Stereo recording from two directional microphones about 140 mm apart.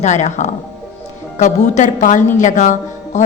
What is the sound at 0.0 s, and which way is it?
A woman's voice, 55° left (ahead or behind).